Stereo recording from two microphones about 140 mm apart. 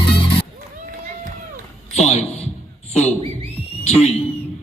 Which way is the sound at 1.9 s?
50° left (ahead or behind).